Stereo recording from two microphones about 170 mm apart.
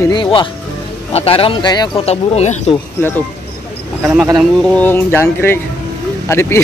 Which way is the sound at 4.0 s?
5° right (ahead or behind).